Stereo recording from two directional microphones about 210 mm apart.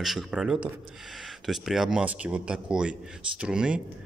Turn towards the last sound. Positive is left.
turn(degrees=-5)  # may be behind; listen again after turning